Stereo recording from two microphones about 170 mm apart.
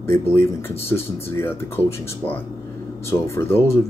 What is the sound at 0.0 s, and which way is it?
Speech, 15° left (ahead or behind).